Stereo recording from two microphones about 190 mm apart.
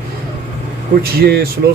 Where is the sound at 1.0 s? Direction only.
55° right (ahead or behind).